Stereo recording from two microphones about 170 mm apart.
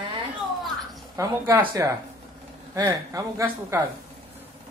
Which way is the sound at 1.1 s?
20° right (ahead or behind).